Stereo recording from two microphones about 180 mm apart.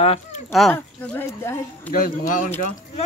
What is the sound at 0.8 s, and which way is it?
Speech, 10° left (ahead or behind).